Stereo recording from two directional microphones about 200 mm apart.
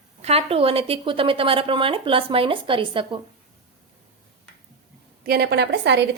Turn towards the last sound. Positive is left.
turn(degrees=-60)  # may be behind; listen again after turning